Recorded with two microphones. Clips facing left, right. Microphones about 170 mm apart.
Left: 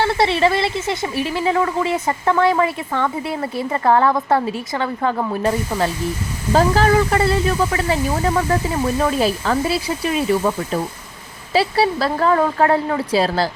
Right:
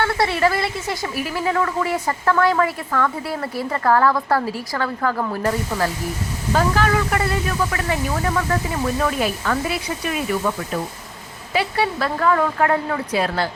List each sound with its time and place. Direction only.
0.0 s a woman's voice: 25° left (ahead or behind)